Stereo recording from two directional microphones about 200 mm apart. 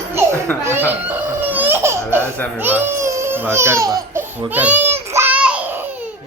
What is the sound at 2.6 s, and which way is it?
Baby cry, 10° right (ahead or behind).